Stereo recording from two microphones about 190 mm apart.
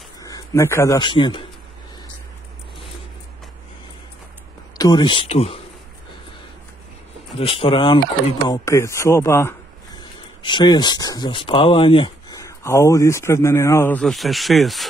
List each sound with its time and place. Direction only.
0.2 s a man's voice: 15° left (ahead or behind)
4.7 s speech: 20° left (ahead or behind)
7.3 s speech: 30° left (ahead or behind); by 14.9 s centre (ahead or behind)